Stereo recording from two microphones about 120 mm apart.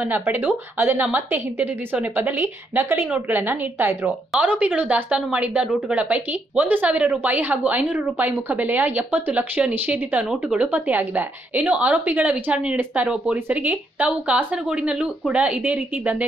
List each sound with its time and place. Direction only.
0.0 s a woman's voice: 15° right (ahead or behind)